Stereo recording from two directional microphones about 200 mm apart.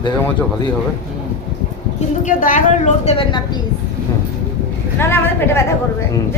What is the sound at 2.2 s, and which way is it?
A woman's voice, 40° left (ahead or behind).